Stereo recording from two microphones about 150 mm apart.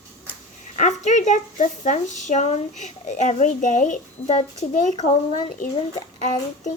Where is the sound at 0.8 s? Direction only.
55° left (ahead or behind).